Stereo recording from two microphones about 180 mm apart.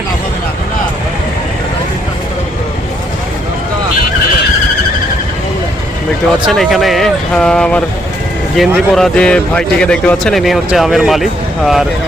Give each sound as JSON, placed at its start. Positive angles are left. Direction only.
{"t": 6.5, "sound": "speech", "side_deg": 0}